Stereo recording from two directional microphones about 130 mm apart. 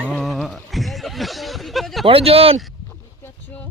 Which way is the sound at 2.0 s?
45° right (ahead or behind).